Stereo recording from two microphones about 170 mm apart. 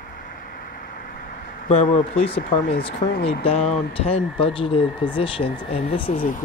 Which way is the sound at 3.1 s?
70° left (ahead or behind).